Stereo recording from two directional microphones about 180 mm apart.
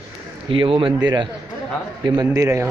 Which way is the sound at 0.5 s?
30° right (ahead or behind).